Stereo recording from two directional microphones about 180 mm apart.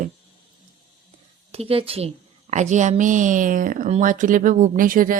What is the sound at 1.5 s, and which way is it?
A woman's voice, 35° right (ahead or behind).